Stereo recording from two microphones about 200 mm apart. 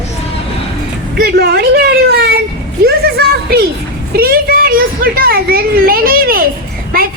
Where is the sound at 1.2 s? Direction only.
55° right (ahead or behind).